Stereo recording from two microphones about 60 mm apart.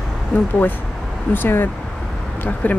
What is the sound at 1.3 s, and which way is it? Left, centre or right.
Speech, left.